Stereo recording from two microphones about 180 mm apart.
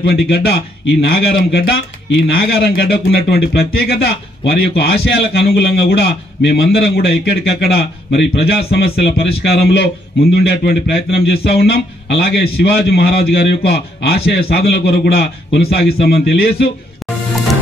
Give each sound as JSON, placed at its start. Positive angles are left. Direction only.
{"t": 0.1, "sound": "speech", "side_deg": 60}